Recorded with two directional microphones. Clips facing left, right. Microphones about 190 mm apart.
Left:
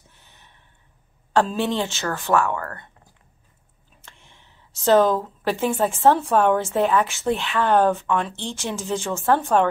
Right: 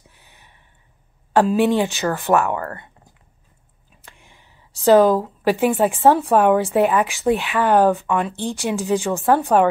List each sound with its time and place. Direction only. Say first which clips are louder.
0.1 s a sound: right 2 dB; 15° right (ahead or behind)
1.3 s speech: right 5 dB; 15° right (ahead or behind)
4.0 s whispering: right 2 dB; 10° right (ahead or behind)
4.8 s speech: right 4 dB; 15° right (ahead or behind)